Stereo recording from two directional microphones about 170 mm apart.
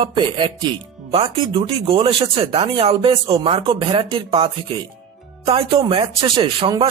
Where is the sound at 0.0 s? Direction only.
25° right (ahead or behind).